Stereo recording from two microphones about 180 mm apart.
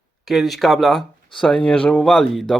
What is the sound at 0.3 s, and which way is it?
Speech, centre (ahead or behind).